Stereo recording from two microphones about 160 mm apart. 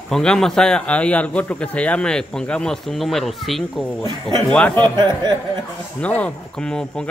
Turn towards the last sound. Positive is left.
turn(degrees=5)  # may be behind; listen again after turning